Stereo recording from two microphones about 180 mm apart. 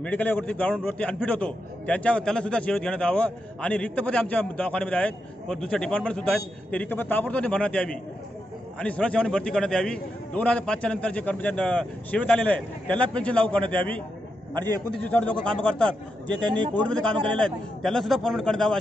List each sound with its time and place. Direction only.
0.0 s a man's voice: 10° left (ahead or behind)
16.4 s a man's voice: 25° right (ahead or behind)
16.7 s a man's voice: 5° left (ahead or behind)